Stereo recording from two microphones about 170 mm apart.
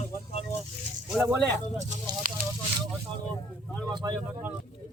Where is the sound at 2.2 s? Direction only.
50° right (ahead or behind).